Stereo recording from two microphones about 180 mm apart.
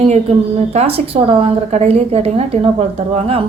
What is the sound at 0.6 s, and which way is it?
A woman's voice, 35° right (ahead or behind).